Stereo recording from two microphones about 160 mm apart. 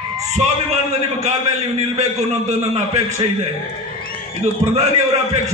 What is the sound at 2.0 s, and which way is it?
A man's voice, 45° right (ahead or behind).